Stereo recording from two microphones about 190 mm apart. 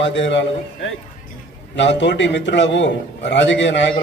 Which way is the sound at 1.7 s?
70° left (ahead or behind).